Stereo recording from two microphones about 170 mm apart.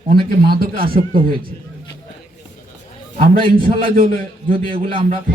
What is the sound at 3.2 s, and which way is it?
A man's voice, 55° right (ahead or behind).